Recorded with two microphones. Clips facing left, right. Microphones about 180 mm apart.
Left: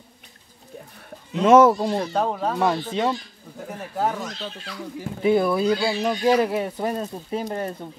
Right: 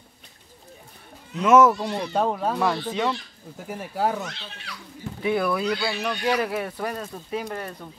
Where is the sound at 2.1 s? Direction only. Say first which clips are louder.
Even; centre (ahead or behind).